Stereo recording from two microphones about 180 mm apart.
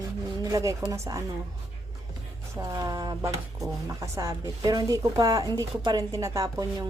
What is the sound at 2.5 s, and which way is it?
Speech, 20° right (ahead or behind).